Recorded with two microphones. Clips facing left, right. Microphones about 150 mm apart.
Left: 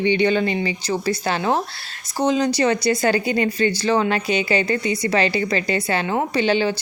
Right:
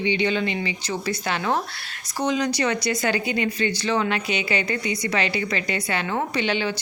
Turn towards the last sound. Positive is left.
turn(degrees=35)  # may be behind; listen again after turning